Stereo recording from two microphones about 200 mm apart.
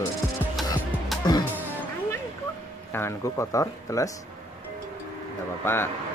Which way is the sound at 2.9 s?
15° left (ahead or behind).